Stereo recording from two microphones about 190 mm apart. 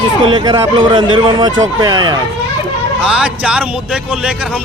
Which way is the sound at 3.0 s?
5° right (ahead or behind).